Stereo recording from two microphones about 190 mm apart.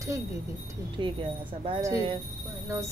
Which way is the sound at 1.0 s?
25° right (ahead or behind).